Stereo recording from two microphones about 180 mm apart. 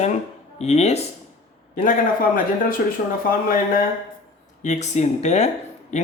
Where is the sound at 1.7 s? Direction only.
50° left (ahead or behind).